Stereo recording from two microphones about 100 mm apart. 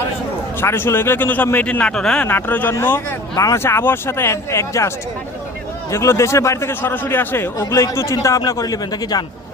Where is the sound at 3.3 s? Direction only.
30° left (ahead or behind).